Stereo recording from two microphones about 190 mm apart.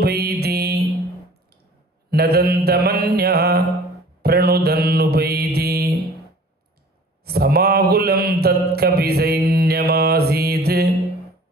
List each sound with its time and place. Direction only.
0.0 s mantra: 55° right (ahead or behind)
2.0 s mantra: 55° right (ahead or behind)
7.2 s mantra: 55° right (ahead or behind)